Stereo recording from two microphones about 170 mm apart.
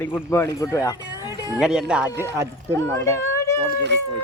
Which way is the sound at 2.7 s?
15° left (ahead or behind).